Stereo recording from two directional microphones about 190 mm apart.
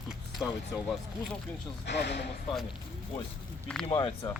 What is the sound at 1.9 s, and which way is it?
Speech, 60° left (ahead or behind).